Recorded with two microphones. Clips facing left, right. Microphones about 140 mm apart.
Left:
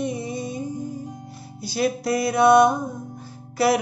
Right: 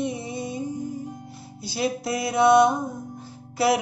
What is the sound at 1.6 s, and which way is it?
Music, 25° right (ahead or behind).